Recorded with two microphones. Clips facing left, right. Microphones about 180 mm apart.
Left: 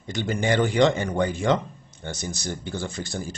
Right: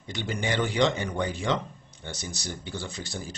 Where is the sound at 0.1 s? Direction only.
45° left (ahead or behind).